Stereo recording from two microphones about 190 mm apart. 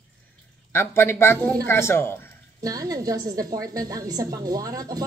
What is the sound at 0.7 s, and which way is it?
Speech, 15° left (ahead or behind).